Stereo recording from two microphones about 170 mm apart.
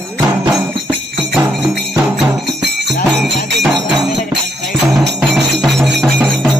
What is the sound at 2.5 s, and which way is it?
Music, 90° right.